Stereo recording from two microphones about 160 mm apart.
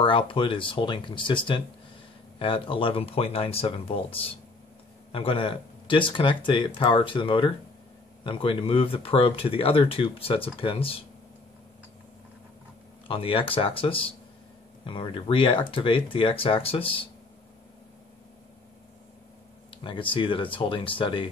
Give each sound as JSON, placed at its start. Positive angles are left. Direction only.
{"t": 0.0, "sound": "speech", "side_deg": 30}
{"t": 13.1, "sound": "speech", "side_deg": 35}
{"t": 19.8, "sound": "speech", "side_deg": 30}